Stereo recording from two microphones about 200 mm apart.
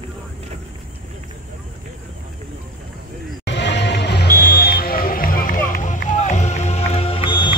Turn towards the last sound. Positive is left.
turn(degrees=25)  # may be behind; listen again after turning